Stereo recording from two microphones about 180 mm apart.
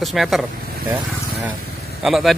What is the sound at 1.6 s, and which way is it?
Vehicle, 60° left (ahead or behind).